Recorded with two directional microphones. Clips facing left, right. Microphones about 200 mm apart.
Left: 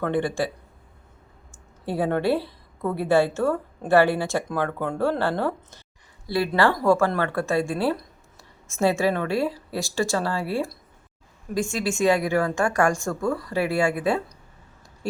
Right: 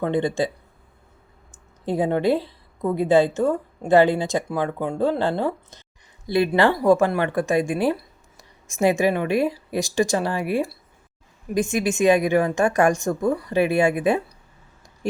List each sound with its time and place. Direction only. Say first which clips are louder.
0.0 s a woman's voice: right 2 dB; 20° right (ahead or behind)
1.8 s a woman's voice: right 3 dB; 20° right (ahead or behind)